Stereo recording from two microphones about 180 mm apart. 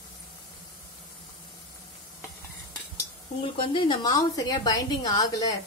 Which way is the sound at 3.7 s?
25° left (ahead or behind).